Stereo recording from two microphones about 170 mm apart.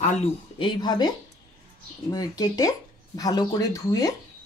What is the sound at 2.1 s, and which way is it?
Speech, 20° left (ahead or behind).